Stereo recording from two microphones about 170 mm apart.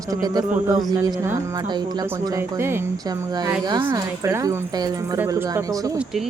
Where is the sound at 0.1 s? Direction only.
25° right (ahead or behind).